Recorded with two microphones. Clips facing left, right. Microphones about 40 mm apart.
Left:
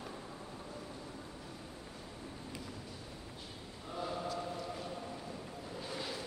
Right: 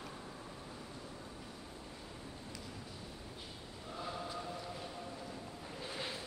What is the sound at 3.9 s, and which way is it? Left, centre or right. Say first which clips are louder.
Chant: left 4 dB; centre.